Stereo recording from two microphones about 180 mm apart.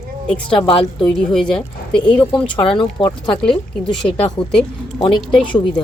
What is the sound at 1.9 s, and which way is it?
Speech, 25° left (ahead or behind).